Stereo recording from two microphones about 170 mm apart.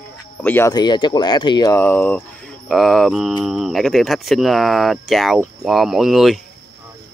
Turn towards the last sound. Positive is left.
turn(degrees=0)  # may be behind; listen again after turning